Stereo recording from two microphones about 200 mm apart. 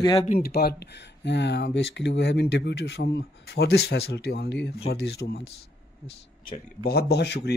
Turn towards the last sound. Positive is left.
turn(degrees=55)  # may be behind; listen again after turning